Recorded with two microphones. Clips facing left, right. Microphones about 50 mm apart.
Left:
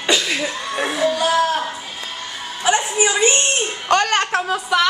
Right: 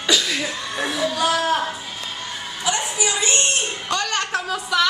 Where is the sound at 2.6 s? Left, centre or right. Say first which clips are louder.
Left 6 dB; left.